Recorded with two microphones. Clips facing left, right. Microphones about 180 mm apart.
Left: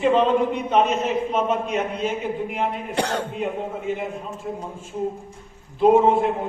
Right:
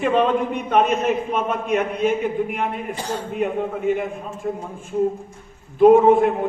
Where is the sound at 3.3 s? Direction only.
55° right (ahead or behind).